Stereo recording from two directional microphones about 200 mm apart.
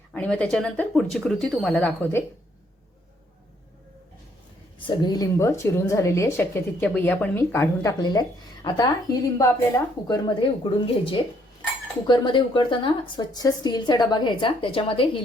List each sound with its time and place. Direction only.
0.1 s speech: 5° left (ahead or behind)
4.9 s a woman's voice: 20° left (ahead or behind)